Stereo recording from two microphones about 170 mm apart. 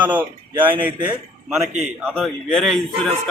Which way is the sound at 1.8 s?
Centre (ahead or behind).